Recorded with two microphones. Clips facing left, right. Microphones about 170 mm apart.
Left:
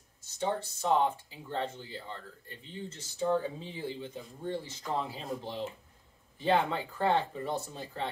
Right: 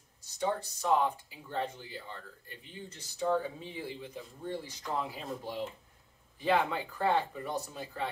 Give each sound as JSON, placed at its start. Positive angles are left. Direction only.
{"t": 0.2, "sound": "speech", "side_deg": 25}